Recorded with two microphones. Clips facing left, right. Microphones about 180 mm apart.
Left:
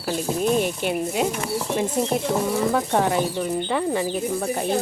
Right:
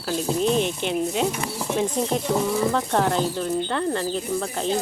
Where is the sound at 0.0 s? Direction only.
5° left (ahead or behind).